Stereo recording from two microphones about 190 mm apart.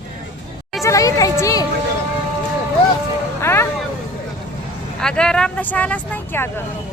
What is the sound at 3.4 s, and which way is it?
Vehicle, 15° left (ahead or behind).